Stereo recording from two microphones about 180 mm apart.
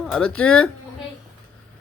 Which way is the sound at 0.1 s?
5° left (ahead or behind).